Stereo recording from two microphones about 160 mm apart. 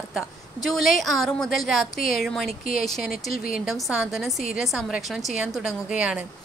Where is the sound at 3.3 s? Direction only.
60° left (ahead or behind).